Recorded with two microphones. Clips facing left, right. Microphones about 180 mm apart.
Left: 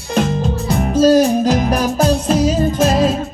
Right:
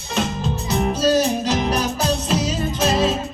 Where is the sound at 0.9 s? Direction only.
50° left (ahead or behind).